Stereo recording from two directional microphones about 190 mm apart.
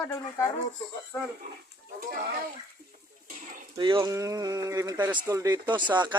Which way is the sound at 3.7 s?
25° right (ahead or behind).